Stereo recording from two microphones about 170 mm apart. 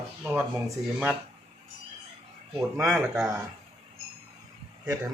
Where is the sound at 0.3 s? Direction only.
10° right (ahead or behind).